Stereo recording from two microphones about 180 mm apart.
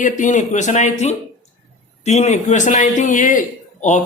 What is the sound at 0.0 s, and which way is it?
A man's voice, 45° left (ahead or behind).